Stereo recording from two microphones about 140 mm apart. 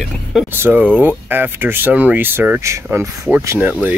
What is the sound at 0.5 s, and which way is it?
Speech, 15° right (ahead or behind).